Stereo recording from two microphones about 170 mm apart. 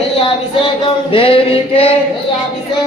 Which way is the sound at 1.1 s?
30° left (ahead or behind).